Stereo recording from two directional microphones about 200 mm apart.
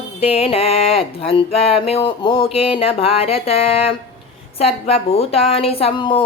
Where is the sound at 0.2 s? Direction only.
30° left (ahead or behind).